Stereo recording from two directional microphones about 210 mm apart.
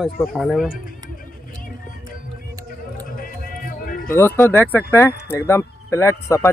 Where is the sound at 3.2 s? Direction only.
40° left (ahead or behind).